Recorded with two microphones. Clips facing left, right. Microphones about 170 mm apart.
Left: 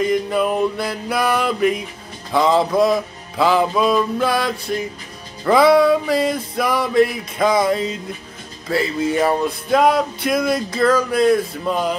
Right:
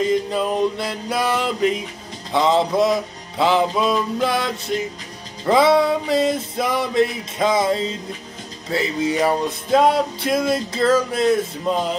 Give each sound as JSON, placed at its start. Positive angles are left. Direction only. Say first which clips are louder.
{"t": 0.1, "sound": "music", "louder": "left 2 dB", "side_deg": -25}